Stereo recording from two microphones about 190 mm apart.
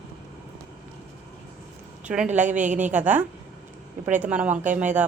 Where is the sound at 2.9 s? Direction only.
10° right (ahead or behind).